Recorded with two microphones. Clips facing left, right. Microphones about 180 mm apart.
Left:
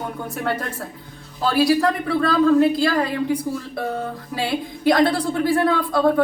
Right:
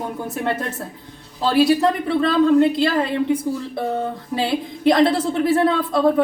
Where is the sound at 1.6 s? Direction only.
25° right (ahead or behind).